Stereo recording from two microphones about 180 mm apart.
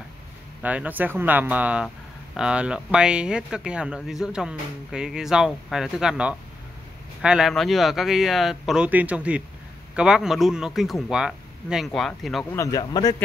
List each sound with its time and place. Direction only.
0.6 s speech: 10° right (ahead or behind)
12.5 s speech: 20° left (ahead or behind)